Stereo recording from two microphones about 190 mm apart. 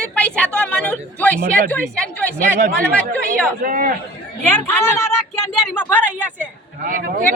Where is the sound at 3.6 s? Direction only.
45° right (ahead or behind).